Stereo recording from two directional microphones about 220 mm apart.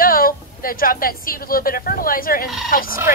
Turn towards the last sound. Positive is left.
turn(degrees=40)  # may be behind; listen again after turning